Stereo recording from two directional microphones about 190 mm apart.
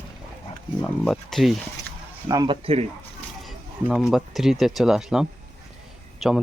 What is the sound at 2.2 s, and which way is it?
Speech, 20° right (ahead or behind).